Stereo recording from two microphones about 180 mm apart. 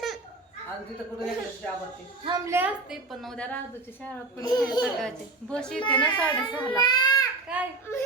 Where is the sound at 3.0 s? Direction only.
Centre (ahead or behind).